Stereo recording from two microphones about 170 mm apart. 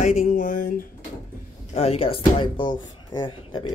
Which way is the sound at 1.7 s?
35° left (ahead or behind).